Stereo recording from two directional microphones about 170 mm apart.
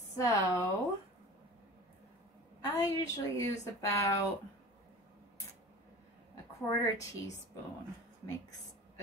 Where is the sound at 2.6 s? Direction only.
20° left (ahead or behind).